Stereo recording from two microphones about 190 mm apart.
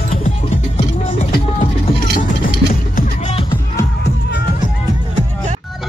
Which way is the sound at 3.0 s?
40° left (ahead or behind).